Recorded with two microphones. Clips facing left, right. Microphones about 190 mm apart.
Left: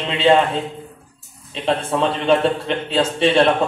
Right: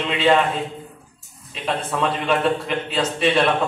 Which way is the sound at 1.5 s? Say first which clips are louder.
Left 5 dB; 30° left (ahead or behind).